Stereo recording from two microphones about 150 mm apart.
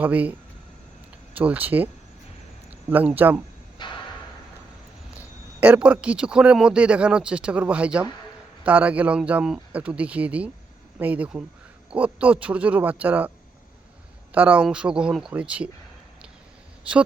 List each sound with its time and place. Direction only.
0.0 s speech: 10° right (ahead or behind)
1.4 s speech: 10° right (ahead or behind)
2.9 s speech: 10° right (ahead or behind)
3.8 s a sound: 30° left (ahead or behind)
5.1 s speech: 10° right (ahead or behind)
14.3 s speech: 10° right (ahead or behind)